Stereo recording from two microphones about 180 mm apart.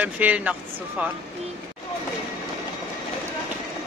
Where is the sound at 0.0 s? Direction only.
10° right (ahead or behind).